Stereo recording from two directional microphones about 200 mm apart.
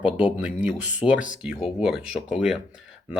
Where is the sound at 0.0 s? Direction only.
5° right (ahead or behind).